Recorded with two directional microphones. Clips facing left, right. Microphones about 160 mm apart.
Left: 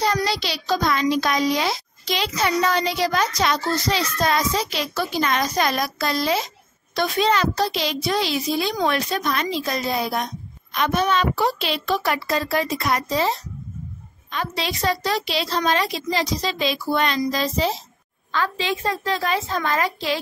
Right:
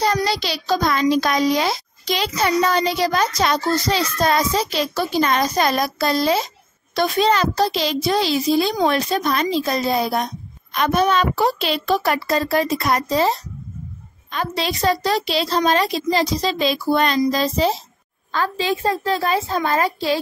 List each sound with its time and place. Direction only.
0.0 s a child's voice: 40° right (ahead or behind)